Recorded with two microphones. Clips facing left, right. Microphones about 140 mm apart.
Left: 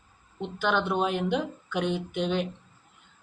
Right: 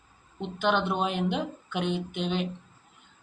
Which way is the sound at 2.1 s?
45° left (ahead or behind).